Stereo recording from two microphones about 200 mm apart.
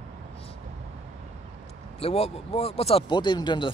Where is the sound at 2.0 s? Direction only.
30° left (ahead or behind).